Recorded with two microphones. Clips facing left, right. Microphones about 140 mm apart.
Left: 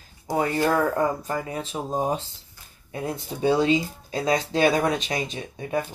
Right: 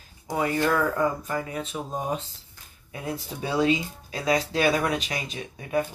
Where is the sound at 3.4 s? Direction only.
30° left (ahead or behind).